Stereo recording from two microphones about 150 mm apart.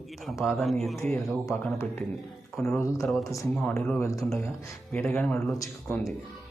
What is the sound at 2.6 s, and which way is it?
Speech, 5° left (ahead or behind).